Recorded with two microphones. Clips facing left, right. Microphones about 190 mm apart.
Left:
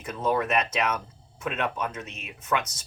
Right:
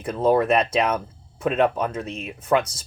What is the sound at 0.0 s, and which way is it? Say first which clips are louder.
Speech: right 7 dB; 30° right (ahead or behind).